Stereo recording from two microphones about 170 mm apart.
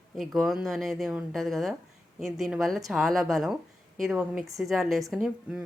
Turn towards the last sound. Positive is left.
turn(degrees=-5)  # may be behind; listen again after turning